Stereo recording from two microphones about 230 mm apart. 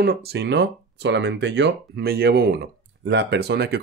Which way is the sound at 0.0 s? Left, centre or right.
Right.